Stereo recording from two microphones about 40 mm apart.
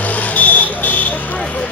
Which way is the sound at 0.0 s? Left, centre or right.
Left.